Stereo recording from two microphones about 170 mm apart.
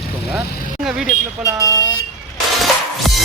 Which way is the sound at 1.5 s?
20° right (ahead or behind).